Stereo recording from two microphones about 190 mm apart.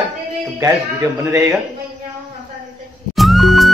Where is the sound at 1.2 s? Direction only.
15° right (ahead or behind).